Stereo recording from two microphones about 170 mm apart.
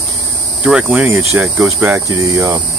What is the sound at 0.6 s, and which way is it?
Speech, 10° right (ahead or behind).